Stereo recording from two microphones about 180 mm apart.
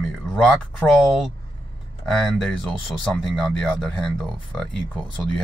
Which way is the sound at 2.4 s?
Centre (ahead or behind).